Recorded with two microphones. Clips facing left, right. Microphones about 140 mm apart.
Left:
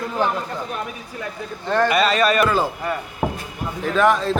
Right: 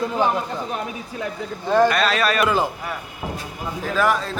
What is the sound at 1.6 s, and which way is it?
Speech, 10° right (ahead or behind).